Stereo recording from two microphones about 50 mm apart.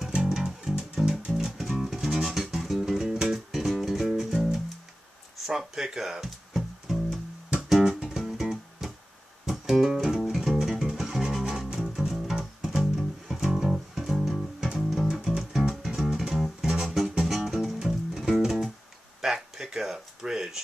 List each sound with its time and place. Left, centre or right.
0.3 s music: centre
1.0 s music: centre
1.3 s music: centre
10.0 s music: centre
19.2 s a sound: centre